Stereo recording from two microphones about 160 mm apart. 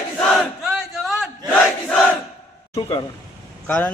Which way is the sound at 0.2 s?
5° left (ahead or behind).